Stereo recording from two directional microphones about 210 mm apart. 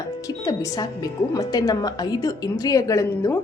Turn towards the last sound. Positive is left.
turn(degrees=15)  # may be behind; listen again after turning